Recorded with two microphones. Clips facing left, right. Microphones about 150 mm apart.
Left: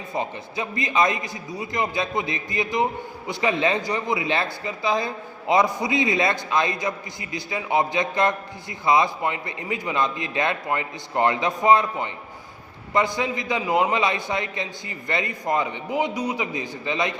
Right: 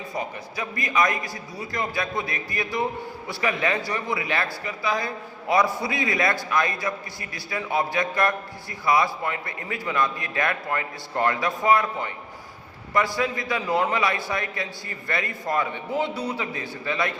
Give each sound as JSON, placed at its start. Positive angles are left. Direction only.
{"t": 0.1, "sound": "speech", "side_deg": 25}